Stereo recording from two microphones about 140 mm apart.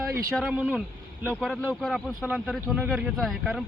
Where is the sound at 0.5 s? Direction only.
10° right (ahead or behind).